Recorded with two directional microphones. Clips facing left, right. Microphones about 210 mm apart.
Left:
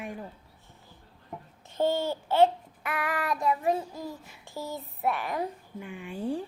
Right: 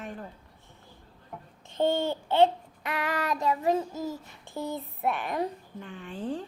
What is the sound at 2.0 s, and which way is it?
Child singing, 20° right (ahead or behind).